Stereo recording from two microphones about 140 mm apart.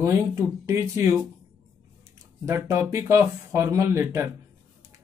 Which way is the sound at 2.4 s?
20° right (ahead or behind).